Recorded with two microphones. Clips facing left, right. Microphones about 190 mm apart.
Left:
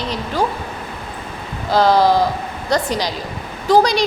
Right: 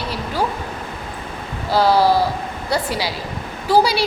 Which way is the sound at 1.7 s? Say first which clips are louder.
Left 1 dB; 10° right (ahead or behind).